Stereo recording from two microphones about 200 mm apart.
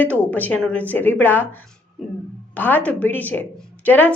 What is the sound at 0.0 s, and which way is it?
A woman's voice, 5° left (ahead or behind).